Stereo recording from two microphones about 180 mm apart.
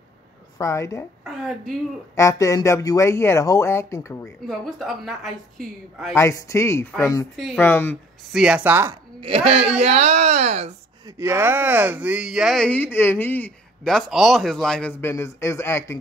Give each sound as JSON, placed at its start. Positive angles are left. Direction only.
{"t": 0.6, "sound": "speech", "side_deg": 20}
{"t": 2.1, "sound": "speech", "side_deg": 15}
{"t": 4.5, "sound": "speech", "side_deg": 0}
{"t": 6.1, "sound": "speech", "side_deg": 15}
{"t": 7.3, "sound": "speech", "side_deg": 0}
{"t": 7.6, "sound": "speech", "side_deg": 10}
{"t": 8.3, "sound": "speech", "side_deg": -5}
{"t": 9.2, "sound": "speech", "side_deg": -30}
{"t": 11.1, "sound": "speech", "side_deg": -15}